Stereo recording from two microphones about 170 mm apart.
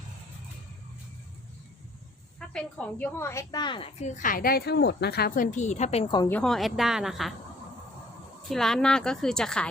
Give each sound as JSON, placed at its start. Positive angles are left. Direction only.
{"t": 2.5, "sound": "a woman's voice", "side_deg": 5}
{"t": 4.1, "sound": "a woman's voice", "side_deg": 50}
{"t": 6.1, "sound": "a woman's voice", "side_deg": 15}
{"t": 6.4, "sound": "a woman's voice", "side_deg": 0}
{"t": 8.4, "sound": "a woman's voice", "side_deg": 0}